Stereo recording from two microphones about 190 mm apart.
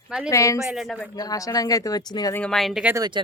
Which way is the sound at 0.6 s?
Centre (ahead or behind).